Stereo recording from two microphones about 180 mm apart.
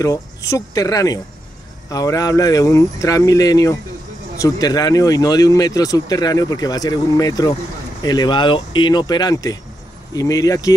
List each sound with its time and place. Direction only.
0.0 s speech: 20° left (ahead or behind)